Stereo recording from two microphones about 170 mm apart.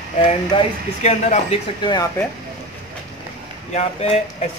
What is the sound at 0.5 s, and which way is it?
Speech, 30° left (ahead or behind).